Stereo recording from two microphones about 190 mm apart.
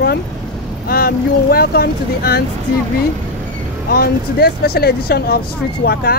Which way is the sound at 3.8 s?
55° left (ahead or behind).